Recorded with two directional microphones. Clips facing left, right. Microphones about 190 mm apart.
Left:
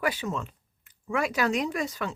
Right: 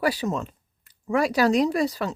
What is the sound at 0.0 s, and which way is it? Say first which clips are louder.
Speech: right 5 dB; 35° right (ahead or behind).